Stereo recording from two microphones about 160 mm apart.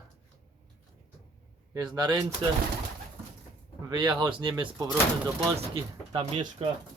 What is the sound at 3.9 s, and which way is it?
Speech, 30° right (ahead or behind).